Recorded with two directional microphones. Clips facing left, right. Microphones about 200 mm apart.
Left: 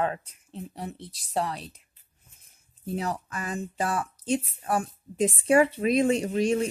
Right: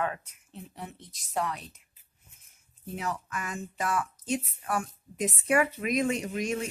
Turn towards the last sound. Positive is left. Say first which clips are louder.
# left 7 dB
turn(degrees=30)  # may be behind; listen again after turning